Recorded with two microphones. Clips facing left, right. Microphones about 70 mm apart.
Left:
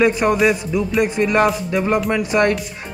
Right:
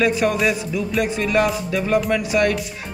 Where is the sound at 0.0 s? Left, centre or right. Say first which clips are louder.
Left 3 dB; left.